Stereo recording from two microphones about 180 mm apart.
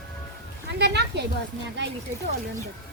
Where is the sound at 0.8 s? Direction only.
70° right (ahead or behind).